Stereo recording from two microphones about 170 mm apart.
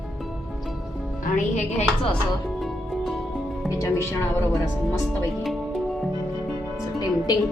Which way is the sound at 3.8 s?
15° left (ahead or behind).